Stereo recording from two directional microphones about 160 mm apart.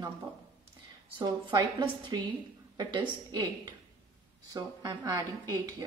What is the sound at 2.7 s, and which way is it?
Speech, 25° right (ahead or behind).